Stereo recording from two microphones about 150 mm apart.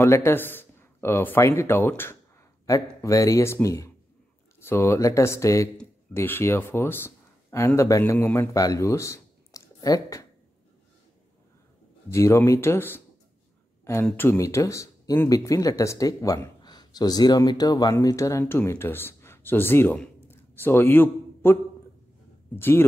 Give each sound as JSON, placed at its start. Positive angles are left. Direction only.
{"t": 0.0, "sound": "speech", "side_deg": 15}
{"t": 12.1, "sound": "speech", "side_deg": 20}
{"t": 14.0, "sound": "speech", "side_deg": 15}
{"t": 22.6, "sound": "speech", "side_deg": 15}